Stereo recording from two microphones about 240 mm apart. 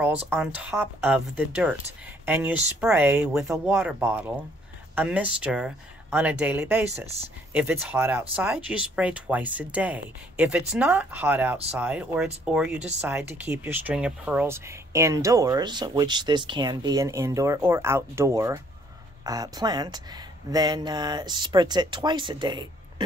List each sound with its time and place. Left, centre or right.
0.3 s speech: centre